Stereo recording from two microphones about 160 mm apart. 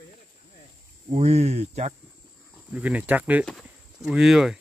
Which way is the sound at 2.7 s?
10° right (ahead or behind).